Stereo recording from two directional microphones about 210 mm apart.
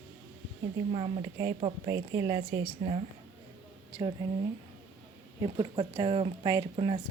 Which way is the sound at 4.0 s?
25° right (ahead or behind).